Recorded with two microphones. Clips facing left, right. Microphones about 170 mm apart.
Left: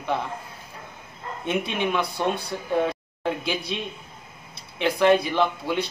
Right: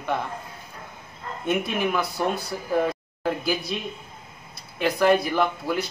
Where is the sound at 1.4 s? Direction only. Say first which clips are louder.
Right 1 dB; 5° right (ahead or behind).